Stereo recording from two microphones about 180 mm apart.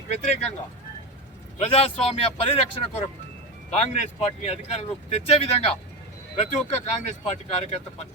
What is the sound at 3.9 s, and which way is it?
Speech, 35° left (ahead or behind).